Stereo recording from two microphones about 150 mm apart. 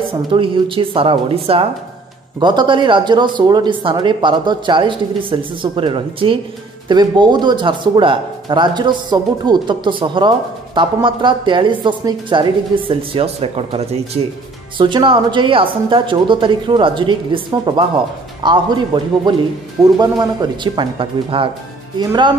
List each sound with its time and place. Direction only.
0.3 s speech: 35° right (ahead or behind)
14.8 s speech: 35° right (ahead or behind)